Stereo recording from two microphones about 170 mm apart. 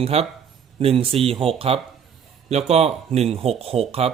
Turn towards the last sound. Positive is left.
turn(degrees=-35)  # may be behind; listen again after turning